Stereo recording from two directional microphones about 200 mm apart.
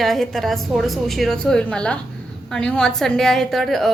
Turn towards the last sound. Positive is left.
turn(degrees=0)  # may be behind; listen again after turning